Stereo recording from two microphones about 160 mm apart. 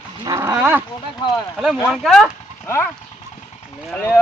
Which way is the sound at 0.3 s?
15° right (ahead or behind).